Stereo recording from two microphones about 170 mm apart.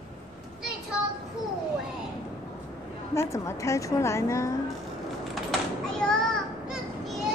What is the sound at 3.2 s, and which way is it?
A woman's voice, 15° left (ahead or behind).